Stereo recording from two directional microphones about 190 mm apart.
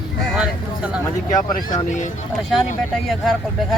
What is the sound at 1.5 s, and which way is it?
Speech, 40° left (ahead or behind).